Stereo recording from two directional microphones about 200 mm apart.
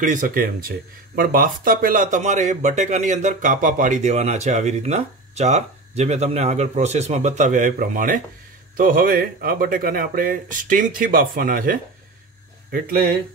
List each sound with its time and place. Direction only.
0.0 s speech: 40° right (ahead or behind)